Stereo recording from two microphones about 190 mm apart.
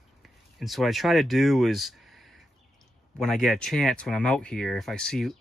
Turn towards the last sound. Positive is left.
turn(degrees=5)  # may be behind; listen again after turning